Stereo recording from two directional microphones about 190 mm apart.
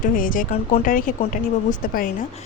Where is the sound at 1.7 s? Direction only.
50° left (ahead or behind).